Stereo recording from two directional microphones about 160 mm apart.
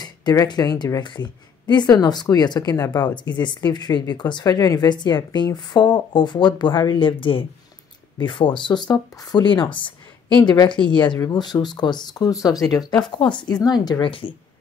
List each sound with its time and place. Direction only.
0.0 s speech: 25° left (ahead or behind)